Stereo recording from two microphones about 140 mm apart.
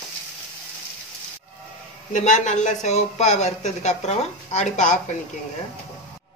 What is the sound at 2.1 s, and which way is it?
Speech, 60° left (ahead or behind).